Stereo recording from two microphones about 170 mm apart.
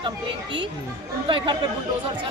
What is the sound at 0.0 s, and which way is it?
A woman's voice, 30° right (ahead or behind).